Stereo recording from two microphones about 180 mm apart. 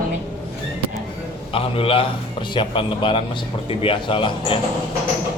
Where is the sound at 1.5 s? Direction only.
30° left (ahead or behind).